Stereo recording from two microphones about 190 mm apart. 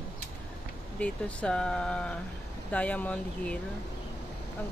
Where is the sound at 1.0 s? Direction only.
5° left (ahead or behind).